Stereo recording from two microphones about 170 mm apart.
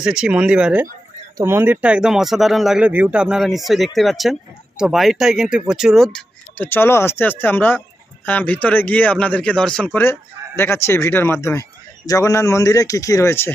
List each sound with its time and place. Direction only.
0.0 s speech: 5° right (ahead or behind); by 13.5 s 15° left (ahead or behind)